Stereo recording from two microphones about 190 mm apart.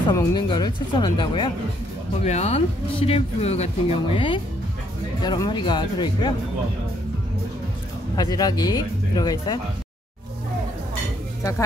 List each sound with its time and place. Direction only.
0.1 s speech: 20° left (ahead or behind)
8.2 s speech: 20° left (ahead or behind)